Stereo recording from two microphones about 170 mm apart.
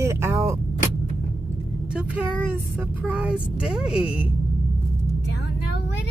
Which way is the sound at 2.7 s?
5° right (ahead or behind).